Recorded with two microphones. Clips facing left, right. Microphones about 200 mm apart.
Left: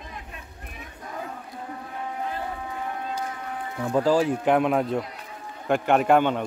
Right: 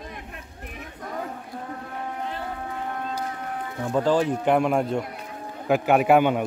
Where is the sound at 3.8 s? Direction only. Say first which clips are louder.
Left 1 dB; 5° left (ahead or behind).